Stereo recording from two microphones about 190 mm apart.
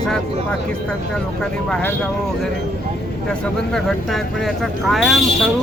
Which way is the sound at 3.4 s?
Centre (ahead or behind).